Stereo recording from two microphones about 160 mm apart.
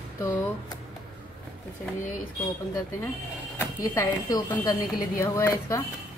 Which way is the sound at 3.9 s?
15° left (ahead or behind).